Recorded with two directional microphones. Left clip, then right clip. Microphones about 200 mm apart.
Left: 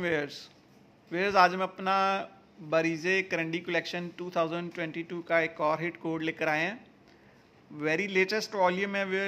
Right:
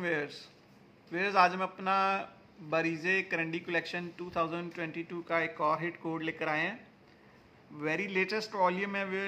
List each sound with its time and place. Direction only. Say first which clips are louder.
0.0 s speech: left 3 dB; 30° left (ahead or behind)
7.8 s speech: left 4 dB; 25° left (ahead or behind)